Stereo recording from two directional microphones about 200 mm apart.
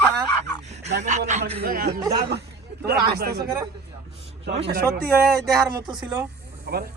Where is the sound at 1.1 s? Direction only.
35° right (ahead or behind).